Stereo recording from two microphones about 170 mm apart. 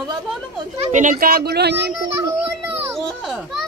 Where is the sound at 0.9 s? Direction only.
55° right (ahead or behind); by 2.0 s 80° right.